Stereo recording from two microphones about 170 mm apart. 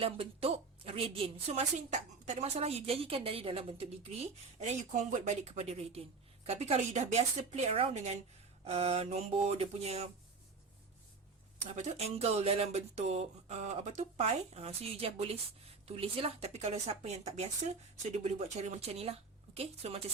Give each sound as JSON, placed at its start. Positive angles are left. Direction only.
{"t": 0.0, "sound": "a woman's voice", "side_deg": -35}
{"t": 11.6, "sound": "a woman's voice", "side_deg": -45}